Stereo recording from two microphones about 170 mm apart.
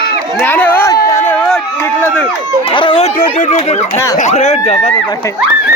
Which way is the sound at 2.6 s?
30° left (ahead or behind).